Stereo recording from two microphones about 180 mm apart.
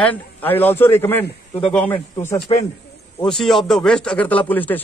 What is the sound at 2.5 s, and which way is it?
Speech, 25° left (ahead or behind).